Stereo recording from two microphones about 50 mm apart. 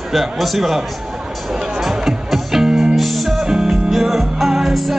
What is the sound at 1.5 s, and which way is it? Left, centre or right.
Music, centre.